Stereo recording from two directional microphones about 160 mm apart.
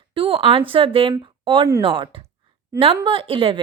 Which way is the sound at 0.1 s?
35° right (ahead or behind).